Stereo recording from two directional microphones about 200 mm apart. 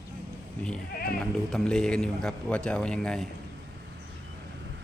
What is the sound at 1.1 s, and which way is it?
Speech, centre (ahead or behind).